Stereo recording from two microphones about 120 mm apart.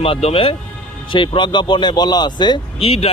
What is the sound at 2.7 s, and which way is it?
Speech, 55° left (ahead or behind).